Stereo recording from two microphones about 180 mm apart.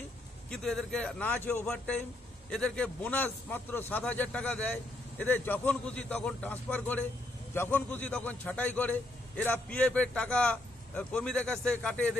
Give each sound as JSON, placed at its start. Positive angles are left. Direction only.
{"t": 0.5, "sound": "a man's voice", "side_deg": 0}